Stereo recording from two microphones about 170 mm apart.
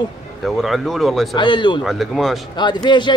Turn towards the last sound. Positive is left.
turn(degrees=25)  # may be behind; listen again after turning